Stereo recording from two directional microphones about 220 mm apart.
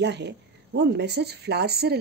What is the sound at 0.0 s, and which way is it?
A woman's voice, 50° right (ahead or behind).